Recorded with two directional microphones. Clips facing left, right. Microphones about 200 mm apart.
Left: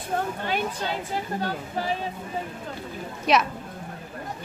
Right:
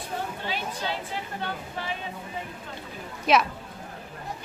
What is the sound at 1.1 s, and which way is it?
Speech, 40° left (ahead or behind).